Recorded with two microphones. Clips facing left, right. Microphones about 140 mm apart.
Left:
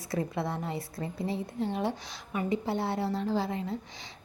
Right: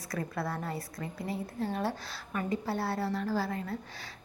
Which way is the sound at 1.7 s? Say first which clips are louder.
Left 2 dB; 15° left (ahead or behind).